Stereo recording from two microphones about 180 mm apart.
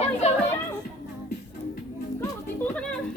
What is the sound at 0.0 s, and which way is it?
Children playing, 35° left (ahead or behind).